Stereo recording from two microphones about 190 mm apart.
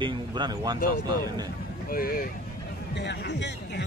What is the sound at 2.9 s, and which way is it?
Speech, 65° left (ahead or behind).